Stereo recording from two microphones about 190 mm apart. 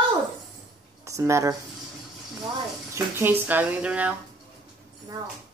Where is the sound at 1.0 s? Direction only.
15° right (ahead or behind).